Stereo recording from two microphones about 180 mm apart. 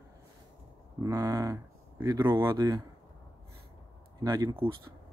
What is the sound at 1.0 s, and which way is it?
Speech, 15° right (ahead or behind).